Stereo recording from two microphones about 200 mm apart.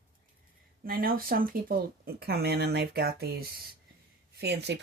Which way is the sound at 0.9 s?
45° right (ahead or behind).